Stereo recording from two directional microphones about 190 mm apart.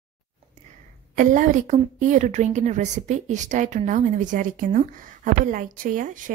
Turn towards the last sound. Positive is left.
turn(degrees=-45)  # may be behind; listen again after turning